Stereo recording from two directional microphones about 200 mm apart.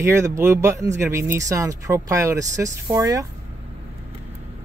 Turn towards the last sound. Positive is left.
turn(degrees=-15)  # may be behind; listen again after turning